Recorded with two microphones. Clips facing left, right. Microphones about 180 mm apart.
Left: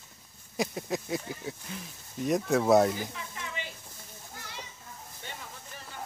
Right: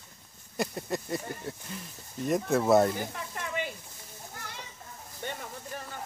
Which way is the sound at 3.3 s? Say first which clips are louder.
Right 8 dB; 55° right (ahead or behind).